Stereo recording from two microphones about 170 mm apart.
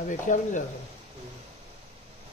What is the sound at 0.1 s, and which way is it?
Speech, 50° left (ahead or behind).